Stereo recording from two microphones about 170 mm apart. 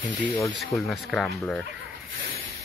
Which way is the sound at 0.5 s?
Centre (ahead or behind).